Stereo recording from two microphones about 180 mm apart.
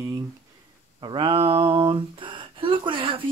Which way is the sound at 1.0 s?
30° right (ahead or behind).